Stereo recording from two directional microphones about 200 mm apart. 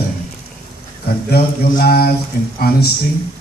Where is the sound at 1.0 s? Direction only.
50° left (ahead or behind).